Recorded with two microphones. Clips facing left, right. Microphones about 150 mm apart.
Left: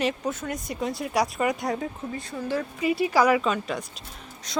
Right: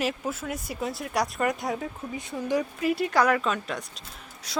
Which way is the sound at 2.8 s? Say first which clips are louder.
Left 4 dB; centre (ahead or behind).